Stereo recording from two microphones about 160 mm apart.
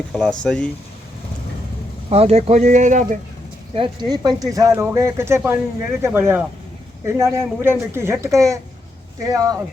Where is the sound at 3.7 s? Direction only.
30° right (ahead or behind).